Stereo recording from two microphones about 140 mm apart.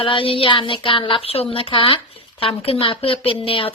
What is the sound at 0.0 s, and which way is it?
Child singing, 40° left (ahead or behind).